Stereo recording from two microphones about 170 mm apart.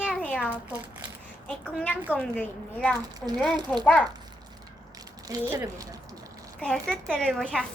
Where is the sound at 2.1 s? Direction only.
5° left (ahead or behind).